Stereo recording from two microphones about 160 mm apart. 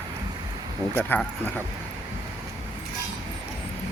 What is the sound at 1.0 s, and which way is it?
Speech, 10° left (ahead or behind).